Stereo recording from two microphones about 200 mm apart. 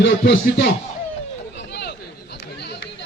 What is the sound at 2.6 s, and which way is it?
Run, 55° left (ahead or behind).